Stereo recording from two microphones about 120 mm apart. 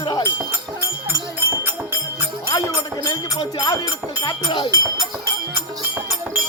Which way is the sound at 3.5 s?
30° left (ahead or behind).